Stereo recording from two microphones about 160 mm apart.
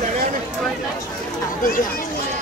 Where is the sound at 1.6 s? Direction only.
60° left (ahead or behind).